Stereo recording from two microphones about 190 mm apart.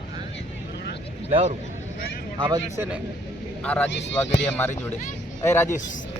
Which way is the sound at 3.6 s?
5° left (ahead or behind).